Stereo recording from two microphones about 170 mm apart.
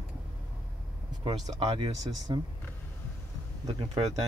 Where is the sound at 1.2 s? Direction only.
30° right (ahead or behind).